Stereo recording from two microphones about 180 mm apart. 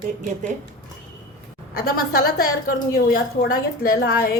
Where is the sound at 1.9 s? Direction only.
55° left (ahead or behind).